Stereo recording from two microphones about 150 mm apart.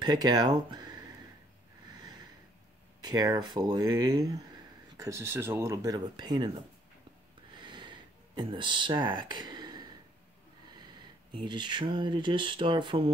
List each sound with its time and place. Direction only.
0.0 s speech: 25° right (ahead or behind)
1.9 s snort: 25° right (ahead or behind)
3.0 s speech: 25° right (ahead or behind)
7.5 s a sound: 30° right (ahead or behind)
11.0 s speech: 30° right (ahead or behind)